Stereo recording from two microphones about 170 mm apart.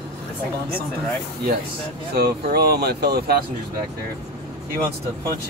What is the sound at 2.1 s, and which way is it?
Speech, 65° right (ahead or behind).